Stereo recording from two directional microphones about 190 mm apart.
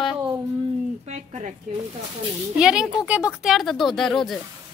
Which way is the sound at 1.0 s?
35° right (ahead or behind).